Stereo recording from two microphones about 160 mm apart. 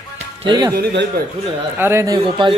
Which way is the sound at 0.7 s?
80° right.